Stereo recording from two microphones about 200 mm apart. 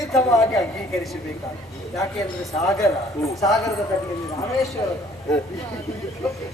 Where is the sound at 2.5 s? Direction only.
15° left (ahead or behind).